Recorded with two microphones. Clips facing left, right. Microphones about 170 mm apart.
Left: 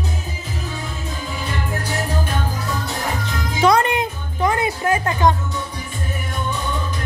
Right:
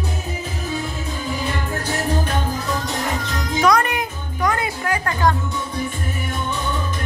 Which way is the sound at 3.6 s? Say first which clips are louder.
Left 2 dB; 25° left (ahead or behind).